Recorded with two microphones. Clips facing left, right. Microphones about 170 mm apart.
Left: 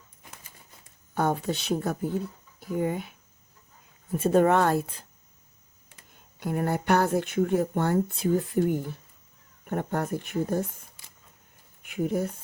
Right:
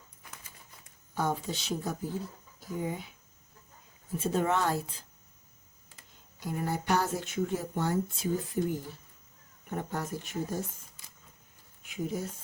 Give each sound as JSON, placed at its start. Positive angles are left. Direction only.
{"t": 1.1, "sound": "speech", "side_deg": 60}
{"t": 6.4, "sound": "speech", "side_deg": 60}
{"t": 11.8, "sound": "speech", "side_deg": 60}